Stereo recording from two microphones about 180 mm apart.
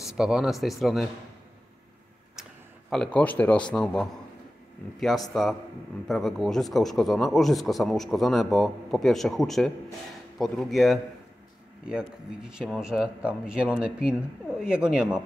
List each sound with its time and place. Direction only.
0.0 s speech: 5° right (ahead or behind)
2.9 s a man's voice: 5° left (ahead or behind)
5.3 s speech: centre (ahead or behind)